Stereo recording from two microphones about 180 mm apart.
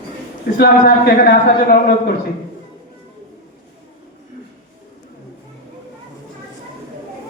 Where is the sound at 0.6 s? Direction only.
60° left (ahead or behind).